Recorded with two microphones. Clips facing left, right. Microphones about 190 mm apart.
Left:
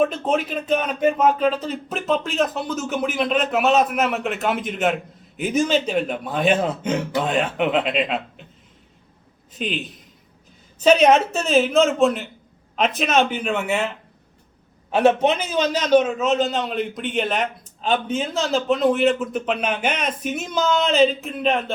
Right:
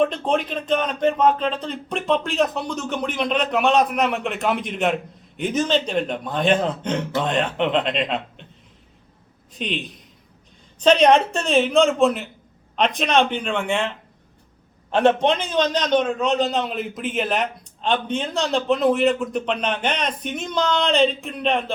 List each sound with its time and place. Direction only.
0.0 s a man's voice: 5° left (ahead or behind)
9.6 s a man's voice: centre (ahead or behind)